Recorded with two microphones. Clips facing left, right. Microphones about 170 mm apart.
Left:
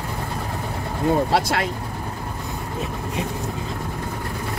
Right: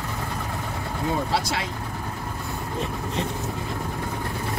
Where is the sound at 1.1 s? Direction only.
55° left (ahead or behind).